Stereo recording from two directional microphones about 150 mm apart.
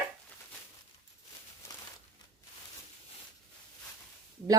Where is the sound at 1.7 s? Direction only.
25° left (ahead or behind).